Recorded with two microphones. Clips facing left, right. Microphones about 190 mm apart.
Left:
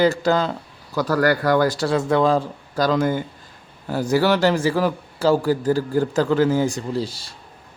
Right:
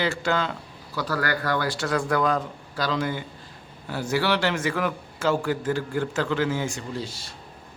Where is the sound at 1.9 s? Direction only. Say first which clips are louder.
Left 3 dB; 25° left (ahead or behind).